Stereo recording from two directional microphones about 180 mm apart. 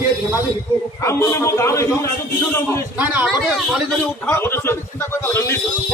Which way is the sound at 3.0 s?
10° right (ahead or behind).